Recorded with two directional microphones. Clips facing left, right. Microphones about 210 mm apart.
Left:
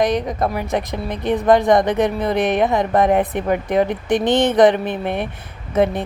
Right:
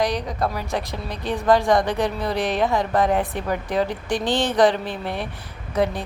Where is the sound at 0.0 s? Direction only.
20° left (ahead or behind).